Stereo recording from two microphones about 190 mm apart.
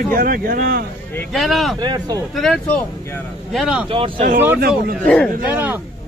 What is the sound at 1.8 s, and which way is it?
Speech, 20° right (ahead or behind).